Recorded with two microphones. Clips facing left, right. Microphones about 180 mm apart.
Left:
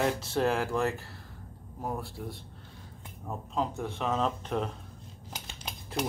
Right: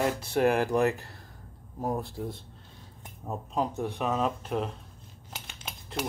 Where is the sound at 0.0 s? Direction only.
15° right (ahead or behind).